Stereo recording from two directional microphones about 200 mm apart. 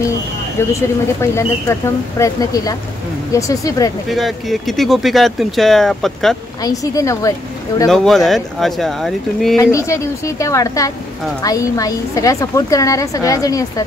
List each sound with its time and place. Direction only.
0.6 s a woman's voice: 15° left (ahead or behind)
4.1 s speech: centre (ahead or behind)
6.6 s a woman's voice: 15° left (ahead or behind)
7.9 s speech: centre (ahead or behind)
9.6 s a woman's voice: 15° left (ahead or behind)